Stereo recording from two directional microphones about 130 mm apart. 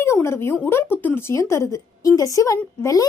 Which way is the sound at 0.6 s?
20° left (ahead or behind).